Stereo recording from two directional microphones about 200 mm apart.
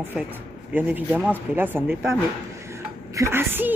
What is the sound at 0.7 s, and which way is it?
Speech, 10° right (ahead or behind).